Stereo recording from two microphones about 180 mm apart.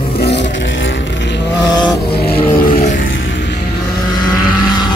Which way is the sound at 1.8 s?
Centre (ahead or behind).